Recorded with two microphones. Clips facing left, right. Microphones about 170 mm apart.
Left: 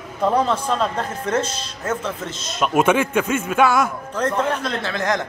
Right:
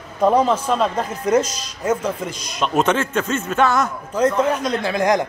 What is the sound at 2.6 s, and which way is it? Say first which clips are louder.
A man's voice: left 1 dB; 10° left (ahead or behind).